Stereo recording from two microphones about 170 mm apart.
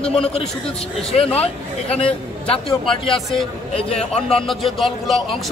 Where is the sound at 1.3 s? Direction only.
35° left (ahead or behind).